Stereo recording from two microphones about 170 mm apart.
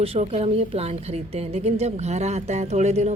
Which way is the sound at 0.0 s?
35° right (ahead or behind).